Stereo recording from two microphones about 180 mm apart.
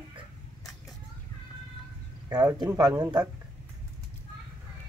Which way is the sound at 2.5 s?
20° right (ahead or behind).